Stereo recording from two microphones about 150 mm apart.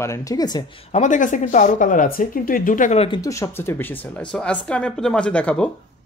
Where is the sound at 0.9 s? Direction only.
55° left (ahead or behind).